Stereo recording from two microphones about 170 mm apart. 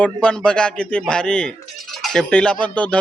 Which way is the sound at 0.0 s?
5° left (ahead or behind).